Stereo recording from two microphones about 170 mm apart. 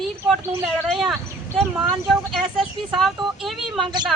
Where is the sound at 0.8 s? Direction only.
Centre (ahead or behind).